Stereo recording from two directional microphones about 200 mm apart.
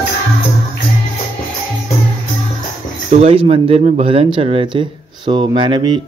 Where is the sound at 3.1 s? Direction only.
30° right (ahead or behind).